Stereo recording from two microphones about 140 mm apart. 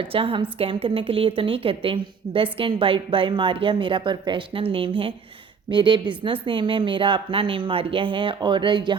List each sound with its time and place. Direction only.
0.0 s a woman's voice: 40° right (ahead or behind)